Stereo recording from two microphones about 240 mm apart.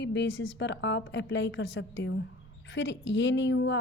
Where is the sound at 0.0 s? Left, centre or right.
Left.